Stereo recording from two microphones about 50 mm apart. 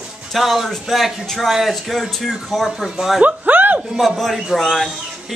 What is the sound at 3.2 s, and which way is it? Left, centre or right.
Speech, right.